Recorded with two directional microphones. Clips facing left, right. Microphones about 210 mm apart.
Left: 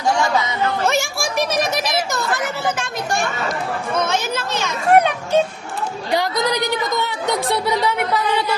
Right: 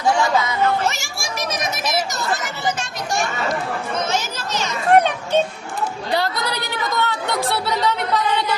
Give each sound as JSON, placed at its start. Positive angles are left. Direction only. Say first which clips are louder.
{"t": 0.9, "sound": "chatter", "louder": "left 5 dB", "side_deg": 55}
{"t": 4.9, "sound": "music", "louder": "left 1 dB", "side_deg": 10}
{"t": 6.1, "sound": "a sound", "louder": "left 4 dB", "side_deg": 15}